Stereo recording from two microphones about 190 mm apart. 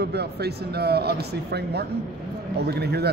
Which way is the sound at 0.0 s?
60° right (ahead or behind).